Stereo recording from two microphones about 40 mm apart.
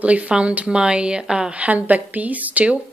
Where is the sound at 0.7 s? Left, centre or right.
Right.